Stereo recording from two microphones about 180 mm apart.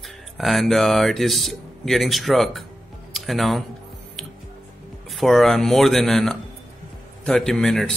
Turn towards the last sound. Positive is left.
turn(degrees=0)  # may be behind; listen again after turning